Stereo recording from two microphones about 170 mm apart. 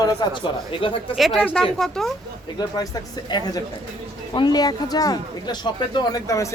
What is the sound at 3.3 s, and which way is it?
A woman's voice, 20° left (ahead or behind).